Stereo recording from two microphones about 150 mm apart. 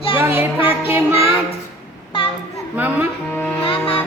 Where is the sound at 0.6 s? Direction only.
15° right (ahead or behind).